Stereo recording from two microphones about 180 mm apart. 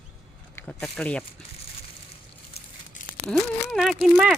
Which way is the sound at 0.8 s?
5° left (ahead or behind).